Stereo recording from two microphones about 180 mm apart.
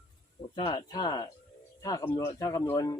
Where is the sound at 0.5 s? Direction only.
25° left (ahead or behind).